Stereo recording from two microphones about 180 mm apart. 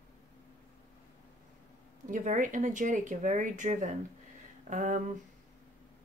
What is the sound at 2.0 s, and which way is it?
Speech, 45° right (ahead or behind).